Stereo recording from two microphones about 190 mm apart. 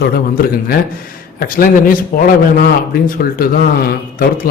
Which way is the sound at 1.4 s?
50° left (ahead or behind).